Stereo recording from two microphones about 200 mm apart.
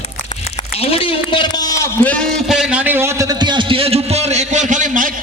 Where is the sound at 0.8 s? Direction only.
30° left (ahead or behind).